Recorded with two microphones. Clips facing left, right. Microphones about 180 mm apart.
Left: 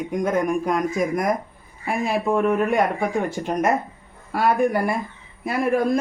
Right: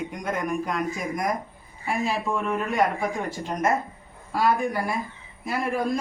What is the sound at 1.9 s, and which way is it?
Speech, 60° left (ahead or behind).